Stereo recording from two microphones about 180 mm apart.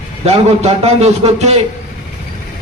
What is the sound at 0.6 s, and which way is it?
Speech, 35° right (ahead or behind).